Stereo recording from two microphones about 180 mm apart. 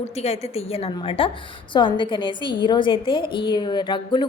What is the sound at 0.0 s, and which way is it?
A woman's voice, 35° left (ahead or behind).